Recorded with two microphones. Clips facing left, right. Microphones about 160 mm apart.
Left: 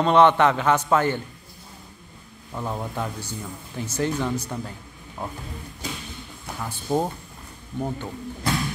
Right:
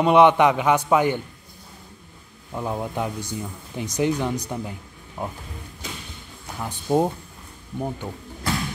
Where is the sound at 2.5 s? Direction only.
10° right (ahead or behind).